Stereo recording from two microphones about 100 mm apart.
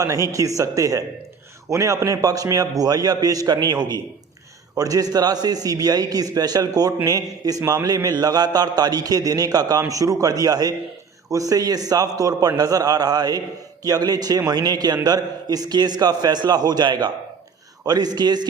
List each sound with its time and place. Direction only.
0.0 s a man's voice: 35° right (ahead or behind)